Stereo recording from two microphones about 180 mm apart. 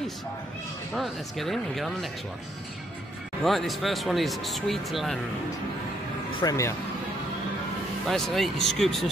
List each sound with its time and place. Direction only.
0.9 s speech: centre (ahead or behind)
3.4 s speech: centre (ahead or behind)
6.4 s speech: 15° left (ahead or behind)
8.1 s speech: centre (ahead or behind)